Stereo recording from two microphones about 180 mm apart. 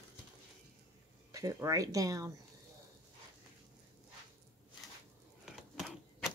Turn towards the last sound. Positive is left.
turn(degrees=0)  # may be behind; listen again after turning